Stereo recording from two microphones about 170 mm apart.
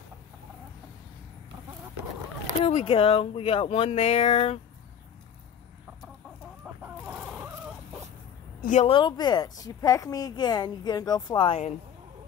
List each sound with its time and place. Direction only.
2.6 s speech: 35° left (ahead or behind)
6.6 s chicken: 10° right (ahead or behind)
8.6 s speech: 45° left (ahead or behind)
8.9 s speech: 25° left (ahead or behind)